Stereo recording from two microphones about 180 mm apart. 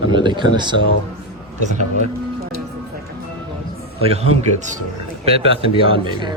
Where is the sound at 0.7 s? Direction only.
90° left.